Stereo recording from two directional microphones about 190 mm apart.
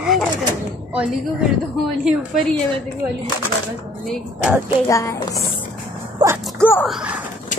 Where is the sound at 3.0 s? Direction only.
15° right (ahead or behind).